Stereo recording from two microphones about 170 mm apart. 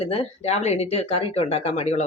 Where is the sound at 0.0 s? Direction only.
40° left (ahead or behind).